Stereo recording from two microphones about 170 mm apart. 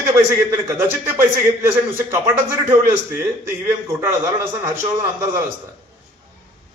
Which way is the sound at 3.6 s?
15° right (ahead or behind).